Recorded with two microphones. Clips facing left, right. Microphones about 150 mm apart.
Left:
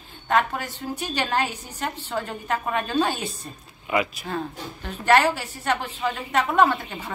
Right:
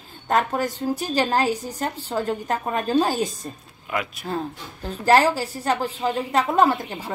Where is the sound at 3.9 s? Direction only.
5° left (ahead or behind).